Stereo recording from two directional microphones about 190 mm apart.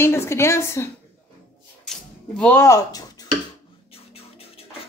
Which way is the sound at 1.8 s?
5° left (ahead or behind).